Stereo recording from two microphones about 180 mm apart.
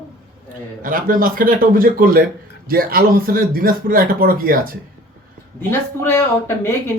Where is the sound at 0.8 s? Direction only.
50° right (ahead or behind).